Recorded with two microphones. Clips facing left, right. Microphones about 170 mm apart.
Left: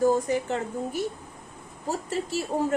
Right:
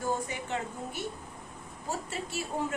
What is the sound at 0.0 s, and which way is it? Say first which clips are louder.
Speech: left 10 dB; 40° left (ahead or behind).